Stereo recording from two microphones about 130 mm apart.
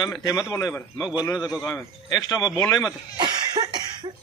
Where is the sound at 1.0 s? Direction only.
10° right (ahead or behind).